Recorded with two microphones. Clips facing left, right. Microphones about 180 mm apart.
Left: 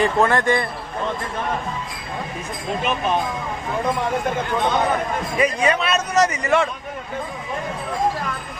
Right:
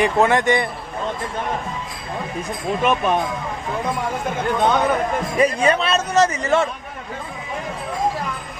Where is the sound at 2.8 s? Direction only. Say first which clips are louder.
Right 4 dB; 55° right (ahead or behind).